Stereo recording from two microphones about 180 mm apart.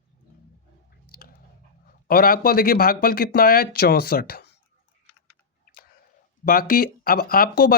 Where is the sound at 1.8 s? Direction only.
55° left (ahead or behind).